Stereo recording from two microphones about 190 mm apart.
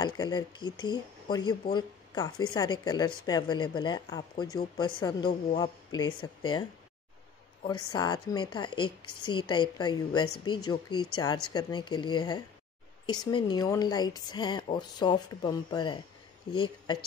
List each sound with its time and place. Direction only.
0.0 s a woman's voice: 20° left (ahead or behind)
5.6 s a woman's voice: 20° left (ahead or behind)
7.6 s a woman's voice: 20° left (ahead or behind)